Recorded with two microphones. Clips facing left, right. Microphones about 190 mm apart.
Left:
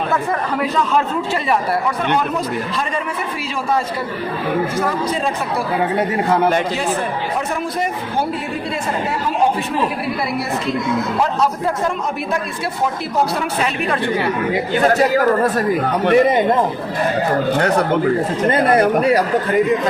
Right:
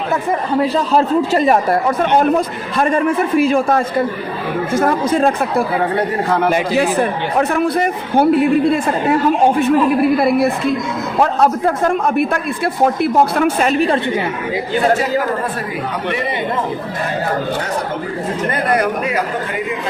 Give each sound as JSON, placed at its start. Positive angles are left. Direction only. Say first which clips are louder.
{"t": 0.6, "sound": "a man's voice", "louder": "right 3 dB", "side_deg": -35}
{"t": 7.3, "sound": "a man's voice", "louder": "right 10 dB", "side_deg": -60}
{"t": 10.2, "sound": "a man's voice", "louder": "right 7 dB", "side_deg": -55}
{"t": 13.7, "sound": "a man's voice", "louder": "right 6 dB", "side_deg": -30}
{"t": 16.0, "sound": "a man's voice", "louder": "left 10 dB", "side_deg": 45}
{"t": 18.5, "sound": "speech", "louder": "left 4 dB", "side_deg": 30}